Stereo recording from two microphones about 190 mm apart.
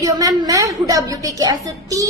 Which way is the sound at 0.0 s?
20° right (ahead or behind).